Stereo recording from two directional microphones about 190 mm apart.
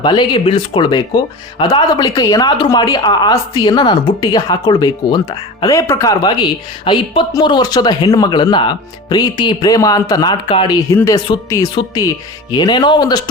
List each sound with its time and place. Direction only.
0.0 s speech: 25° left (ahead or behind)